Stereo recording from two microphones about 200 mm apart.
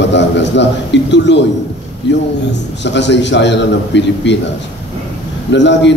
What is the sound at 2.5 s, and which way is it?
A man's voice, 60° left (ahead or behind).